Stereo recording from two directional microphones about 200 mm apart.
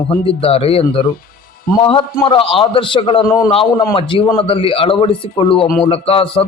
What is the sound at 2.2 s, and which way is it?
Speech, 25° left (ahead or behind).